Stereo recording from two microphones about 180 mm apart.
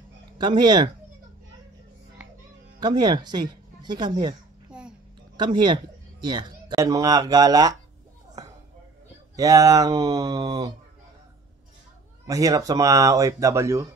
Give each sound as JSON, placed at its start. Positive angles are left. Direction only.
{"t": 0.4, "sound": "speech", "side_deg": -25}
{"t": 2.8, "sound": "speech", "side_deg": -25}
{"t": 4.6, "sound": "a sound", "side_deg": -5}
{"t": 5.4, "sound": "speech", "side_deg": -25}
{"t": 8.4, "sound": "a sound", "side_deg": -20}
{"t": 9.4, "sound": "speech", "side_deg": -20}
{"t": 12.3, "sound": "speech", "side_deg": -20}